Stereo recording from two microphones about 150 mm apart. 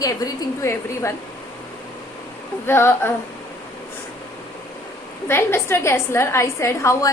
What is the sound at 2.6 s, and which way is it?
Speech, 15° left (ahead or behind).